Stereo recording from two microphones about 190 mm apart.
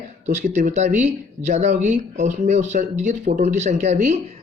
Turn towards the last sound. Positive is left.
turn(degrees=-35)  # may be behind; listen again after turning